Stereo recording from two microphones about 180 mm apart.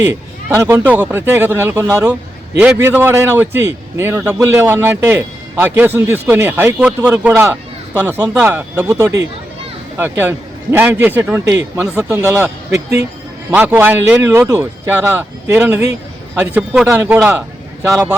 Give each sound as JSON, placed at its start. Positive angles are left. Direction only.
{"t": 0.1, "sound": "a man's voice", "side_deg": -15}